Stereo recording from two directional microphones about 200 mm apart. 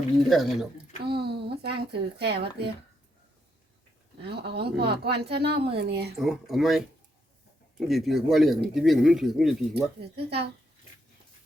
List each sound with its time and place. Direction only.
0.2 s speech: centre (ahead or behind)
1.2 s a woman's voice: 55° right (ahead or behind)
4.2 s a woman's voice: 55° right (ahead or behind)
6.1 s speech: centre (ahead or behind)
10.0 s a woman's voice: 55° right (ahead or behind)